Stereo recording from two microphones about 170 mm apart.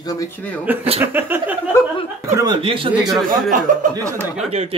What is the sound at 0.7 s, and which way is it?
Speech, 10° right (ahead or behind).